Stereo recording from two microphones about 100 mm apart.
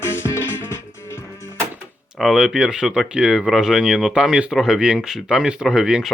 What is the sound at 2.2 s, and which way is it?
Speech, centre (ahead or behind).